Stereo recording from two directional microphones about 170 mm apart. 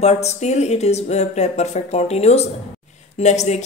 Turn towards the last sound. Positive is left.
turn(degrees=40)  # may be behind; listen again after turning